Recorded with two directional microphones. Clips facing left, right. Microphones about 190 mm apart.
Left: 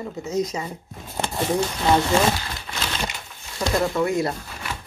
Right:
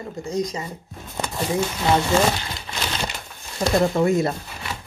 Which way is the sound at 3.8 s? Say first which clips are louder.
Right 3 dB; 25° right (ahead or behind).